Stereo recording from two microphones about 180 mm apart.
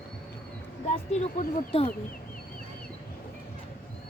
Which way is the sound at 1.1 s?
40° left (ahead or behind).